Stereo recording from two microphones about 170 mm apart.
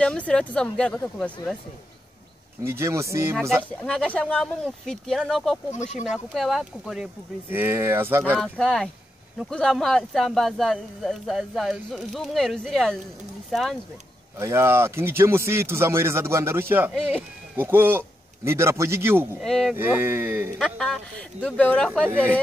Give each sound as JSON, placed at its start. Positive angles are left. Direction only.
{"t": 0.0, "sound": "speech", "side_deg": 5}
{"t": 2.6, "sound": "speech", "side_deg": -15}
{"t": 3.8, "sound": "speech", "side_deg": 5}
{"t": 5.7, "sound": "speech", "side_deg": 45}
{"t": 6.0, "sound": "speech", "side_deg": 0}
{"t": 7.5, "sound": "speech", "side_deg": -10}
{"t": 8.4, "sound": "speech", "side_deg": 5}
{"t": 14.4, "sound": "a man's voice", "side_deg": -15}
{"t": 19.4, "sound": "speech", "side_deg": 0}
{"t": 19.7, "sound": "speech", "side_deg": -10}
{"t": 20.5, "sound": "speech", "side_deg": 5}